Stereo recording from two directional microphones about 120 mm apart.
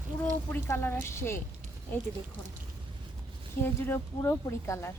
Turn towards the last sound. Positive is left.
turn(degrees=20)  # may be behind; listen again after turning